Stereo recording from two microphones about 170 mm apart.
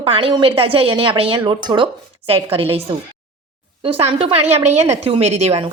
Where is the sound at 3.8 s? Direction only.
35° right (ahead or behind).